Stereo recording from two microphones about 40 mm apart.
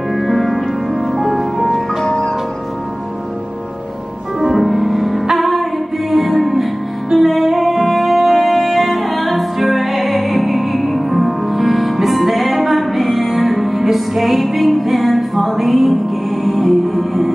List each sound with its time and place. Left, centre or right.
0.1 s music: centre
2.0 s music: left
4.4 s music: centre